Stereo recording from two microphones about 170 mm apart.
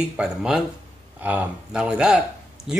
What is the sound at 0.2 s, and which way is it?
Speech, 5° right (ahead or behind).